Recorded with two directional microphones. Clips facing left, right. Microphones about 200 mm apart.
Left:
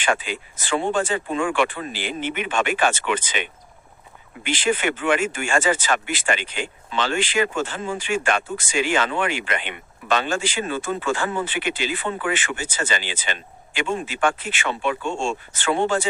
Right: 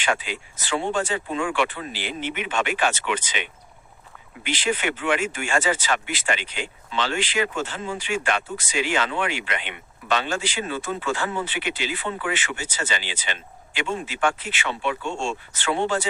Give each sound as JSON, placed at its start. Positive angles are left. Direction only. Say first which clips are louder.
{"t": 0.0, "sound": "speech", "louder": "left 2 dB", "side_deg": 50}